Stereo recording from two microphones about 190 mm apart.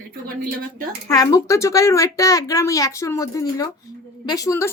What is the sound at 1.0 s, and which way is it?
Speech, 20° left (ahead or behind).